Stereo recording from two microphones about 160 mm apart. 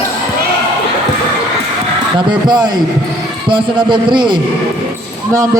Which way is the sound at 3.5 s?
30° right (ahead or behind).